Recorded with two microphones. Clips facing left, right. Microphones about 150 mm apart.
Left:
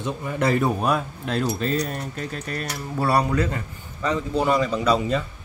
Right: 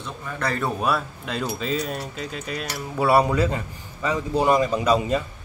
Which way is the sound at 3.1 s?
15° right (ahead or behind).